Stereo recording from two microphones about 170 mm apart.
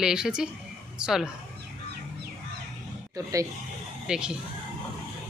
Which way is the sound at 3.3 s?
20° right (ahead or behind).